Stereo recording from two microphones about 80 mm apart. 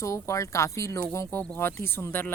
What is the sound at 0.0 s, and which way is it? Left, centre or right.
Speech, left.